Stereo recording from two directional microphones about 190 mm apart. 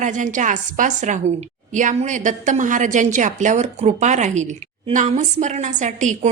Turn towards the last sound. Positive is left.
turn(degrees=-40)  # may be behind; listen again after turning